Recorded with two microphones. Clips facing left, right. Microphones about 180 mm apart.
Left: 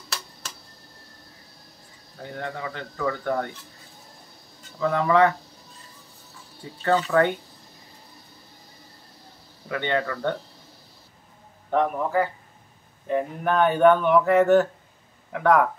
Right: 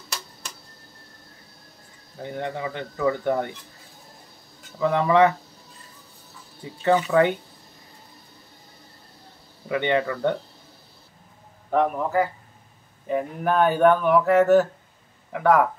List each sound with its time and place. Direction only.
2.3 s speech: 20° right (ahead or behind)
4.7 s speech: 20° right (ahead or behind)
6.8 s speech: 15° right (ahead or behind)
9.7 s speech: 15° right (ahead or behind)
11.7 s speech: centre (ahead or behind)